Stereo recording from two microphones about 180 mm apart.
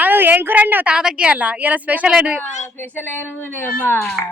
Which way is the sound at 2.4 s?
40° left (ahead or behind).